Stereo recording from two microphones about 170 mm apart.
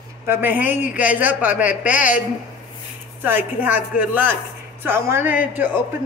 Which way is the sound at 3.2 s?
10° right (ahead or behind).